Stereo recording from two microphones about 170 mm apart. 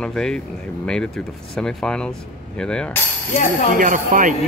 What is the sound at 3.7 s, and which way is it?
Speech, 50° right (ahead or behind).